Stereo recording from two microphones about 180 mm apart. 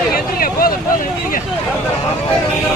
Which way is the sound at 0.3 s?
55° left (ahead or behind).